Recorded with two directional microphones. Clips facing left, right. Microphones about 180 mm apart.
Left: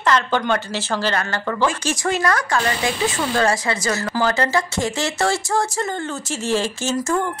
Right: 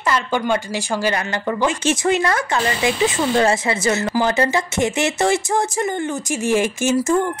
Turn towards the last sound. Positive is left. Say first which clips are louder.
# right 4 dB
turn(degrees=-15)  # may be behind; listen again after turning